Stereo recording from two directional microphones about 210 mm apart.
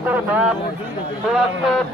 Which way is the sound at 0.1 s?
10° right (ahead or behind).